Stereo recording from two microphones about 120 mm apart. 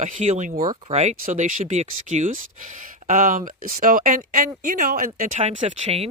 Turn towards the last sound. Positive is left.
turn(degrees=-60)  # may be behind; listen again after turning